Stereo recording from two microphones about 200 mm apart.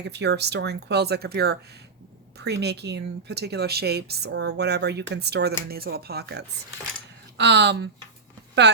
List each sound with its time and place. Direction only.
0.1 s speech: 60° right (ahead or behind)